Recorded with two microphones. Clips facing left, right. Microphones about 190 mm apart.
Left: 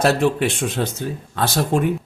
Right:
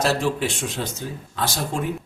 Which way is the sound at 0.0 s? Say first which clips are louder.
Left 5 dB; 60° left (ahead or behind).